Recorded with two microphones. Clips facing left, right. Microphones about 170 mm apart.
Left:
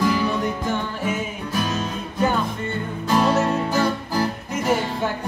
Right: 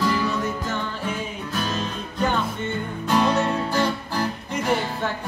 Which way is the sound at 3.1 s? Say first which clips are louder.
Left 2 dB; 5° left (ahead or behind).